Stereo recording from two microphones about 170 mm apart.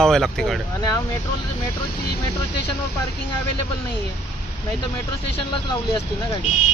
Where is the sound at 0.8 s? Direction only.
20° left (ahead or behind).